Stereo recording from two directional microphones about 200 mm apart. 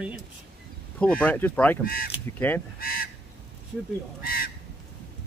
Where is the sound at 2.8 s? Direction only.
45° left (ahead or behind).